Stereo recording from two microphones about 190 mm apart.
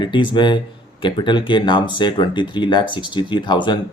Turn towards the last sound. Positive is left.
turn(degrees=25)  # may be behind; listen again after turning